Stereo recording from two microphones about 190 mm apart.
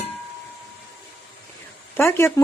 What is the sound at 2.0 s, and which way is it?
Speech, 15° left (ahead or behind).